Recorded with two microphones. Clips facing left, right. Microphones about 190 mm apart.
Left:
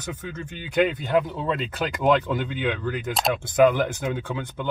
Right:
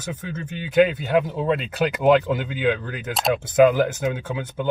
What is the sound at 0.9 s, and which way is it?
Speech, 5° right (ahead or behind).